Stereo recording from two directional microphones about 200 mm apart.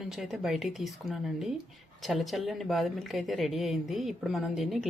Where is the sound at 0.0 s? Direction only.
Centre (ahead or behind).